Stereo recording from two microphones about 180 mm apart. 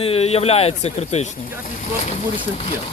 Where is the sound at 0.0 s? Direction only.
35° left (ahead or behind).